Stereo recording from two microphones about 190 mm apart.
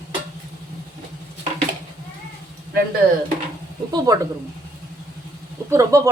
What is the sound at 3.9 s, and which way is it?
Speech, 20° right (ahead or behind).